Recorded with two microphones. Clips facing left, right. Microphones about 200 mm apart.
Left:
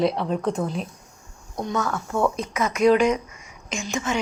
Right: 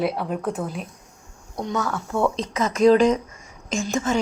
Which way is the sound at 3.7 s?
50° right (ahead or behind).